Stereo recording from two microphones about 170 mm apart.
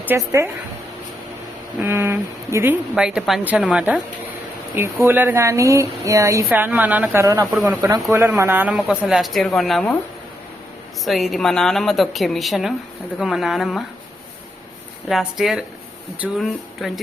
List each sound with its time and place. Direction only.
0.0 s speech: 15° right (ahead or behind)
1.8 s speech: 15° right (ahead or behind)
11.0 s speech: centre (ahead or behind)
15.1 s speech: centre (ahead or behind)